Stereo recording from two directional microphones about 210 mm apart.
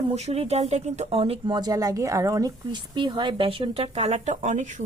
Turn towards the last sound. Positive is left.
turn(degrees=-35)  # may be behind; listen again after turning